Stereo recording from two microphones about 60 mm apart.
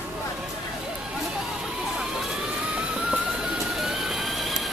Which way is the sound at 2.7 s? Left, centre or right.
Centre.